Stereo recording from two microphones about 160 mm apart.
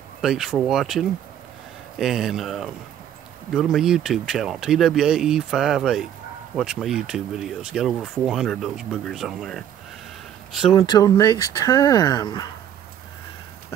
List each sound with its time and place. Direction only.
0.2 s speech: centre (ahead or behind)
10.7 s speech: 25° left (ahead or behind)